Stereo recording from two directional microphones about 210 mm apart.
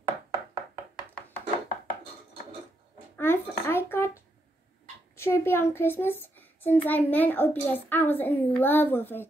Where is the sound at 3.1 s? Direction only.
10° left (ahead or behind).